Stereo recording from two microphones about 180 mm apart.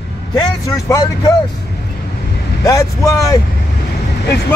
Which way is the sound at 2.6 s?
20° left (ahead or behind).